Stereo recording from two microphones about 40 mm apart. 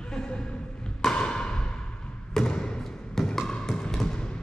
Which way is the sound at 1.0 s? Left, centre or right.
Left.